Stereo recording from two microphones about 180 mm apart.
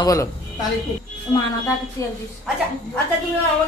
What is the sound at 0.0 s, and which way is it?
Speech, 20° left (ahead or behind).